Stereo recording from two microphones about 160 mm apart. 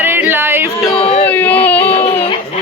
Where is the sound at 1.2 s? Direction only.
10° left (ahead or behind).